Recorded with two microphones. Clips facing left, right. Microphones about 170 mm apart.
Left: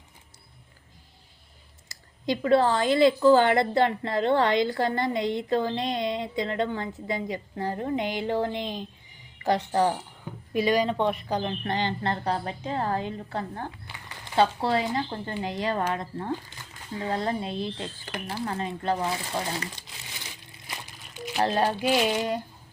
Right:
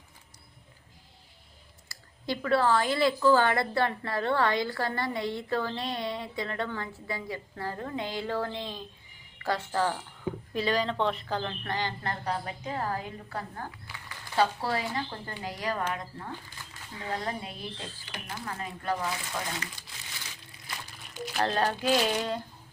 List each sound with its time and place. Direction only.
1.9 s a woman's voice: 20° left (ahead or behind)
21.3 s speech: 15° left (ahead or behind)